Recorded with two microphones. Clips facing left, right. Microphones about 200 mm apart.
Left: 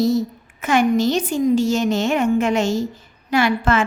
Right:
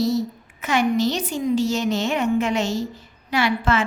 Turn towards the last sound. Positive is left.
turn(degrees=50)  # may be behind; listen again after turning